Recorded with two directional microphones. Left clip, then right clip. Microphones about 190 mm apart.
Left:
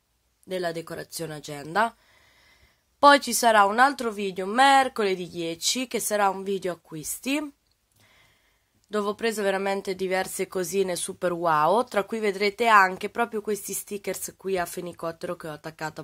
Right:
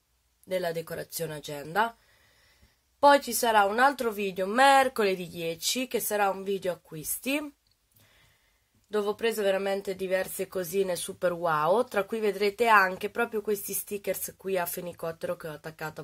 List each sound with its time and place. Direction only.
0.5 s speech: 25° left (ahead or behind)
3.0 s speech: 40° left (ahead or behind); by 7.4 s 15° left (ahead or behind)
8.9 s speech: 30° left (ahead or behind)